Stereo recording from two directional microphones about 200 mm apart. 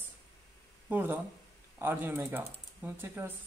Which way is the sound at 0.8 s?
10° right (ahead or behind).